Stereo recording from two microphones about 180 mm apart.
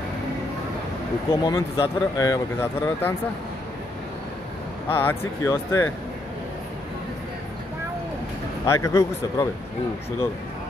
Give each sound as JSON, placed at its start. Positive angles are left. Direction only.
{"t": 1.3, "sound": "speech", "side_deg": 20}
{"t": 4.8, "sound": "speech", "side_deg": 10}
{"t": 8.6, "sound": "speech", "side_deg": 15}